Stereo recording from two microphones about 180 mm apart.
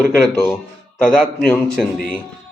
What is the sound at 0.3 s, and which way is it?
Speech, 15° left (ahead or behind).